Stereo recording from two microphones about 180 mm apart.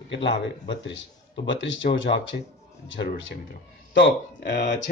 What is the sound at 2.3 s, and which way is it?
Speech, 50° left (ahead or behind).